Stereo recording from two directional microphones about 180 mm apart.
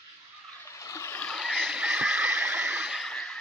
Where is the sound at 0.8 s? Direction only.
15° left (ahead or behind).